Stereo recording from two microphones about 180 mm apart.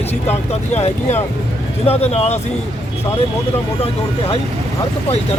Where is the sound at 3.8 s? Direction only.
30° left (ahead or behind).